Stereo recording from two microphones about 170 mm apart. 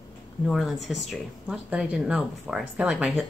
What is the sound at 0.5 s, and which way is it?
Speech, centre (ahead or behind).